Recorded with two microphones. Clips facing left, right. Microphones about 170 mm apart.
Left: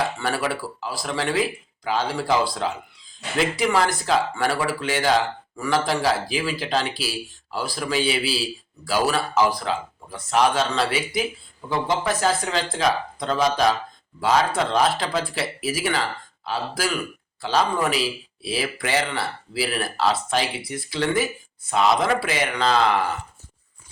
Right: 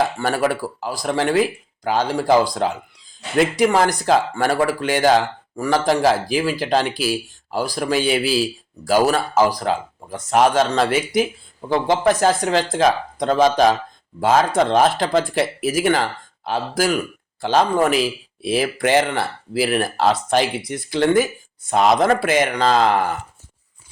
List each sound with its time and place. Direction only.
0.2 s speech: 45° right (ahead or behind)